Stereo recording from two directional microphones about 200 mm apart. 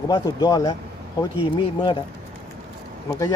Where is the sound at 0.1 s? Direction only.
20° left (ahead or behind).